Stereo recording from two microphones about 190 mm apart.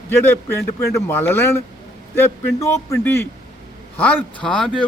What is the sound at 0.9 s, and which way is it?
A man's voice, 15° left (ahead or behind).